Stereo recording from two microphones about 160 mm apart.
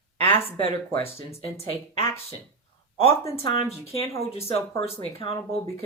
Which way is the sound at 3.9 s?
35° left (ahead or behind).